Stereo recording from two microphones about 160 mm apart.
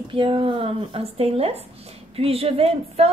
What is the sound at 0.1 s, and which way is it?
A woman's voice, 35° right (ahead or behind).